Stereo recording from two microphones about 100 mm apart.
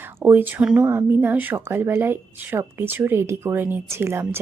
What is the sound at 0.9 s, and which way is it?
Speech, 25° right (ahead or behind).